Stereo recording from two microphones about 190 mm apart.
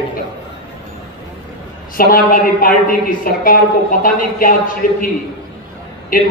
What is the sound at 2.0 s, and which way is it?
A man's voice, 50° left (ahead or behind).